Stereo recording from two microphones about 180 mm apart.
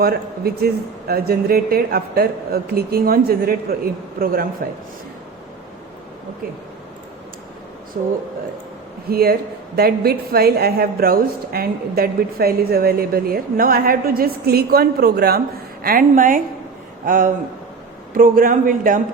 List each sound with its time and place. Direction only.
0.0 s a woman's voice: 60° right (ahead or behind)
9.0 s a woman's voice: 60° right (ahead or behind)